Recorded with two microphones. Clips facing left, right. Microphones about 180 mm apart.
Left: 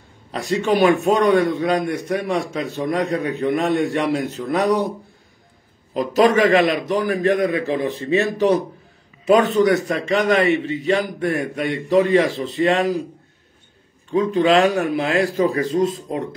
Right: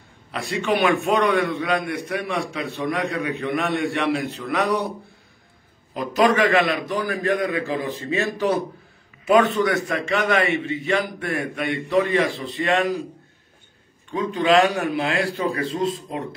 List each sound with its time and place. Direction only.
0.3 s a man's voice: 40° left (ahead or behind)
0.9 s a man's voice: 20° left (ahead or behind)
1.2 s a man's voice: 35° left (ahead or behind)
5.9 s a man's voice: 40° left (ahead or behind)
14.1 s a man's voice: 40° left (ahead or behind)